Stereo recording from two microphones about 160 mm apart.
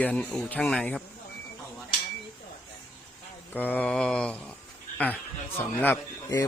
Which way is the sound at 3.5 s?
10° left (ahead or behind).